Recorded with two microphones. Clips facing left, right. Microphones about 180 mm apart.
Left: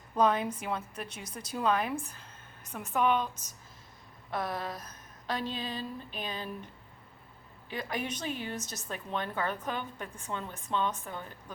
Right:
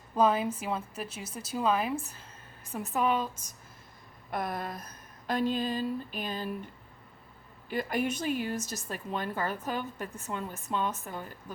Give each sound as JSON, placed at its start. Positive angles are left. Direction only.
{"t": 0.2, "sound": "a woman's voice", "side_deg": -5}
{"t": 5.2, "sound": "a sound", "side_deg": -10}
{"t": 5.6, "sound": "a woman's voice", "side_deg": -10}
{"t": 7.7, "sound": "a woman's voice", "side_deg": -10}